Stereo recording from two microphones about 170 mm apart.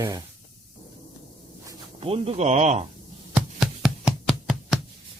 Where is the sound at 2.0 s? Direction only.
35° right (ahead or behind).